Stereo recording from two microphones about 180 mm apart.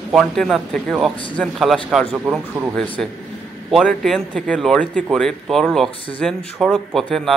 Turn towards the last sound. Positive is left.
turn(degrees=0)  # may be behind; listen again after turning